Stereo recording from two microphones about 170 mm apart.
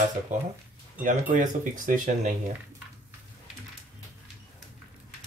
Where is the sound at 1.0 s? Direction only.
50° right (ahead or behind).